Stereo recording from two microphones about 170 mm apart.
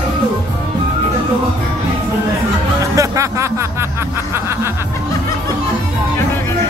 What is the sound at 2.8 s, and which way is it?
Music, 20° right (ahead or behind).